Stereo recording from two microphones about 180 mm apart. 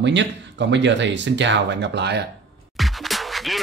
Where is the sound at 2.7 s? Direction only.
Centre (ahead or behind).